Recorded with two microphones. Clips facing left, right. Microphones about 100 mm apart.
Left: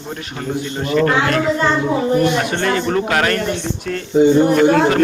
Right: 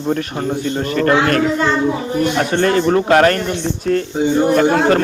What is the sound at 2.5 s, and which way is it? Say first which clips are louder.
Speech: right 4 dB; 40° right (ahead or behind).